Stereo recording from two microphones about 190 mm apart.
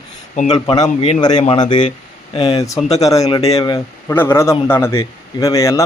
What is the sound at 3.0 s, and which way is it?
A man's voice, 20° left (ahead or behind).